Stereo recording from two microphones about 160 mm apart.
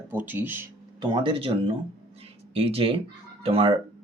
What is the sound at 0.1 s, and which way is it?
Speech, 15° right (ahead or behind).